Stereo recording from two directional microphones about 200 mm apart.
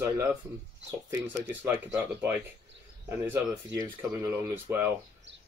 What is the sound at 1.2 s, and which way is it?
Speech, 10° right (ahead or behind).